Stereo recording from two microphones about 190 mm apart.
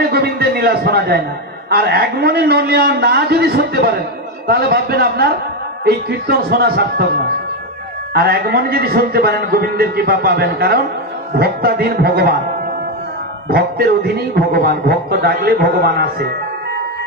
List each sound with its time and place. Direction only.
0.1 s a sound: 55° right (ahead or behind)
1.7 s a man's voice: 55° right (ahead or behind)
8.1 s a man's voice: 55° right (ahead or behind)
13.5 s a man's voice: 55° right (ahead or behind)